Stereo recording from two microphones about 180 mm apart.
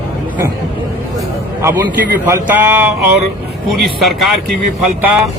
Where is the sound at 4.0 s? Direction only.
Centre (ahead or behind).